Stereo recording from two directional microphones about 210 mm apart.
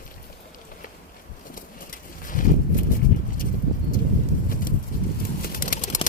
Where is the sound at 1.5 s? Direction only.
40° left (ahead or behind).